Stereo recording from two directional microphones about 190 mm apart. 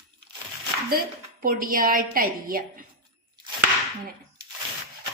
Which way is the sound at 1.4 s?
50° right (ahead or behind).